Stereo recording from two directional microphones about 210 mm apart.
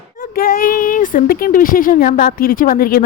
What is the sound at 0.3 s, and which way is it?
A woman's voice, 45° left (ahead or behind).